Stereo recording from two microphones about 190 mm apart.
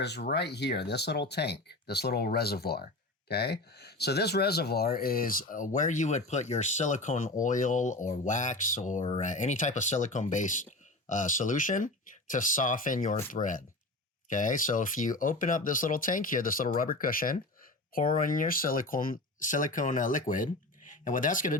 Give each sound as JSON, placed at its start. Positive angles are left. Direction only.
{"t": 0.0, "sound": "speech", "side_deg": 60}